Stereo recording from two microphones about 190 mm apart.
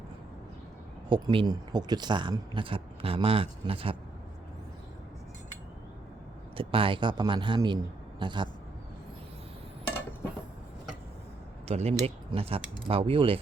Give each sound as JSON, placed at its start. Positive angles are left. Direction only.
{"t": 1.1, "sound": "speech", "side_deg": -25}
{"t": 6.6, "sound": "speech", "side_deg": -30}
{"t": 11.7, "sound": "speech", "side_deg": -35}